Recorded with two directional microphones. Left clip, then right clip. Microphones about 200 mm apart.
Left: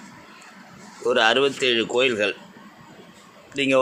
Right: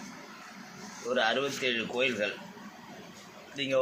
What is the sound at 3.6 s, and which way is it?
Speech, 55° left (ahead or behind).